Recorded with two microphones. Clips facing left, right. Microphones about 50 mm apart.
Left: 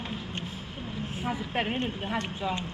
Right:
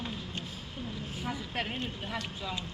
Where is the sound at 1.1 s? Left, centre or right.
Left.